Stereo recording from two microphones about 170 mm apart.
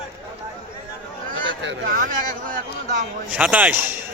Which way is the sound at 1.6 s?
75° right (ahead or behind).